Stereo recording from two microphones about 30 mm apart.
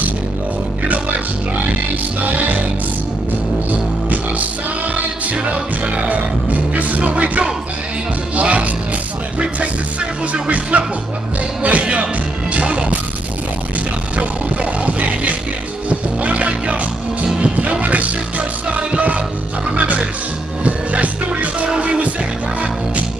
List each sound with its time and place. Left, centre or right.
2.2 s music: right
3.7 s music: right
10.7 s music: right
14.1 s music: right
20.6 s music: right
21.7 s music: right